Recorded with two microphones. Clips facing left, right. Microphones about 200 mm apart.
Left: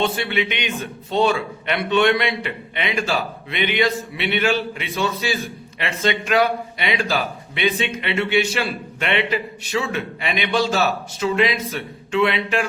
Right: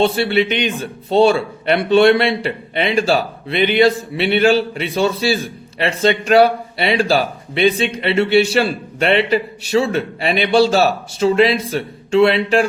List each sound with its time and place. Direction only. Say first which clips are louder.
0.0 s a man's voice: right 7 dB; 35° right (ahead or behind)